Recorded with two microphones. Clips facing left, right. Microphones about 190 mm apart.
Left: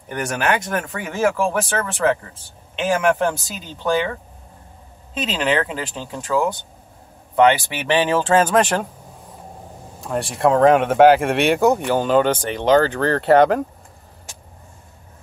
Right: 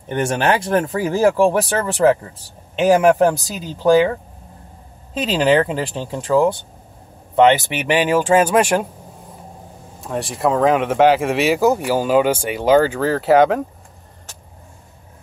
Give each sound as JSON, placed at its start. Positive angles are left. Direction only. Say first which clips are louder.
{"t": 0.1, "sound": "speech", "louder": "right 4 dB", "side_deg": -25}
{"t": 5.2, "sound": "speech", "louder": "right 5 dB", "side_deg": -35}
{"t": 9.9, "sound": "speech", "louder": "even", "side_deg": 0}